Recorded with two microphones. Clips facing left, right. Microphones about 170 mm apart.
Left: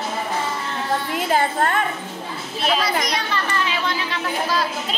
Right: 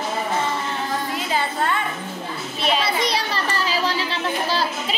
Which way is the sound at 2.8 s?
30° right (ahead or behind).